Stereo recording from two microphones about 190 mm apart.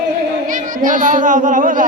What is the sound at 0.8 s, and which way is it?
Speech, 45° right (ahead or behind).